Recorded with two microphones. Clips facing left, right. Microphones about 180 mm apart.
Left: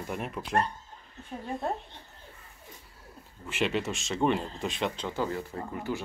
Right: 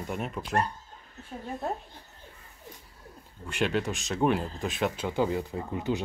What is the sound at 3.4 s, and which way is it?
Speech, centre (ahead or behind).